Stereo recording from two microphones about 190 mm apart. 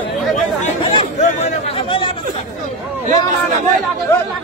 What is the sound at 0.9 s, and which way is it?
Chatter, 30° left (ahead or behind).